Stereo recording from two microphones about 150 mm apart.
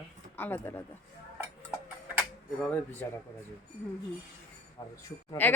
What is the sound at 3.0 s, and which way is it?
Speech, 15° left (ahead or behind).